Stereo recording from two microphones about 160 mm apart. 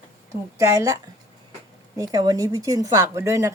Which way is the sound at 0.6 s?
20° right (ahead or behind).